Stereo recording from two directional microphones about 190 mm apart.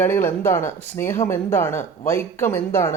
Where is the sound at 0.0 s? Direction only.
10° left (ahead or behind).